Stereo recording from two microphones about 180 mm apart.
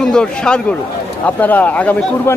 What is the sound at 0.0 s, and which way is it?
A man's voice, 5° left (ahead or behind).